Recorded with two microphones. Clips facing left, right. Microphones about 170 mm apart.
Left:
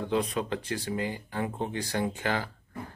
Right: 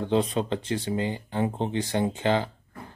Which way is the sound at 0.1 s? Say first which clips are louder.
Right 4 dB; 30° right (ahead or behind).